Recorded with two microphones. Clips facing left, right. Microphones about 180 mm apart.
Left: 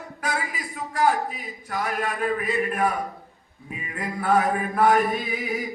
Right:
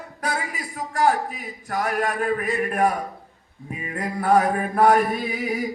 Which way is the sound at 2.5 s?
45° right (ahead or behind).